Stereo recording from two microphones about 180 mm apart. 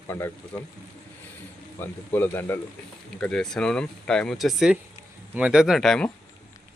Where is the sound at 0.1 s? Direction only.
15° left (ahead or behind).